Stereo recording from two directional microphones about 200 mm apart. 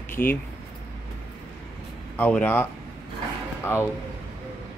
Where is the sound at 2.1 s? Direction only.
10° left (ahead or behind).